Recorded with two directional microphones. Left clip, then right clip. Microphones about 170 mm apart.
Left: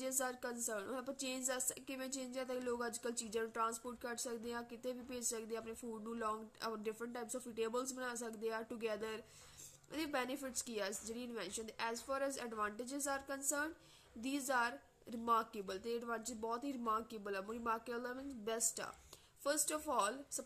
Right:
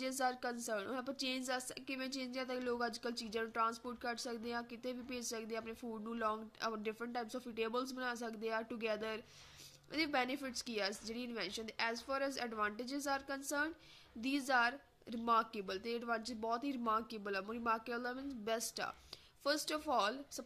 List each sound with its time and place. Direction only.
0.0 s a woman's voice: 15° right (ahead or behind)